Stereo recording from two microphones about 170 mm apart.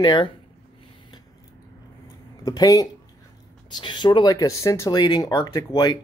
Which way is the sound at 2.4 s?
20° left (ahead or behind).